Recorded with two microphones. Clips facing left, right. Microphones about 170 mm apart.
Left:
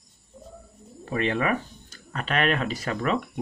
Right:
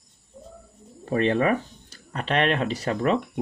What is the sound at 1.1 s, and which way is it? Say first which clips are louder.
Speech: right 4 dB; 35° right (ahead or behind).